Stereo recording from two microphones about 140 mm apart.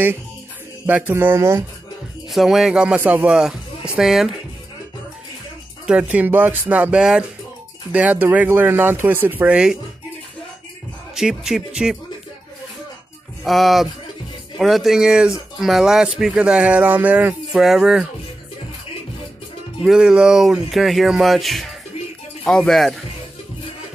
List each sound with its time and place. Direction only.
0.8 s speech: 15° right (ahead or behind)
2.3 s speech: centre (ahead or behind)
5.9 s speech: 10° right (ahead or behind)
11.1 s speech: 5° right (ahead or behind)
13.4 s speech: centre (ahead or behind)
19.8 s speech: 5° right (ahead or behind)